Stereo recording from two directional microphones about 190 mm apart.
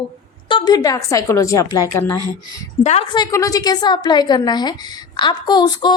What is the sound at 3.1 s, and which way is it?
A woman's voice, 20° left (ahead or behind).